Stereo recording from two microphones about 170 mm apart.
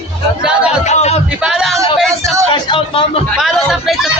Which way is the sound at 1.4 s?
5° right (ahead or behind).